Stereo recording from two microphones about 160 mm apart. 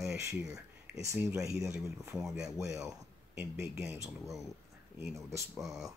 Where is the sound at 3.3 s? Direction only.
15° right (ahead or behind).